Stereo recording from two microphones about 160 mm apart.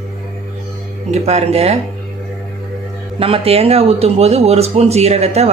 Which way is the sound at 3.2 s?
35° right (ahead or behind).